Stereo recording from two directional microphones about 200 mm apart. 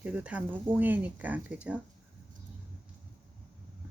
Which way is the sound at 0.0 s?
5° right (ahead or behind).